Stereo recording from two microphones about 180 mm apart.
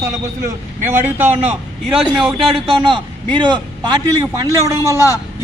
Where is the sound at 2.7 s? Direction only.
30° right (ahead or behind).